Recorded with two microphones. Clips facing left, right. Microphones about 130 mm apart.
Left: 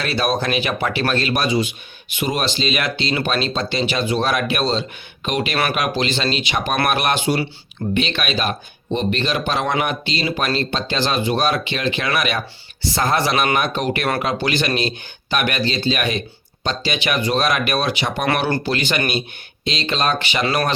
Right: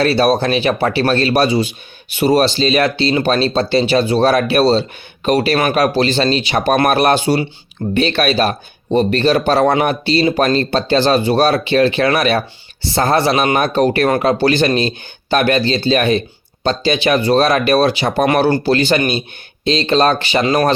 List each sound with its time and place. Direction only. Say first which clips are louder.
0.0 s speech: right 7 dB; 35° right (ahead or behind)